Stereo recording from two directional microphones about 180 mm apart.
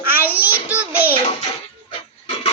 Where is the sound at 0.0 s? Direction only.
10° right (ahead or behind).